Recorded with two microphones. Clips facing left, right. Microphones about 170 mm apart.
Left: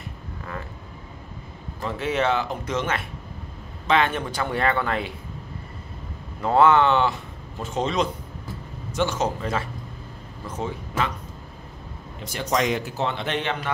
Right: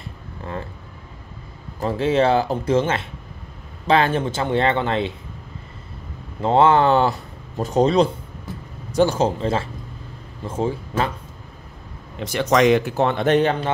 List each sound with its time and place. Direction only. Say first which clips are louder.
1.8 s speech: right 6 dB; 30° right (ahead or behind)
6.4 s speech: right 2 dB; 30° right (ahead or behind)
12.2 s a man's voice: right 7 dB; 80° right; by 13.7 s 40° right (ahead or behind)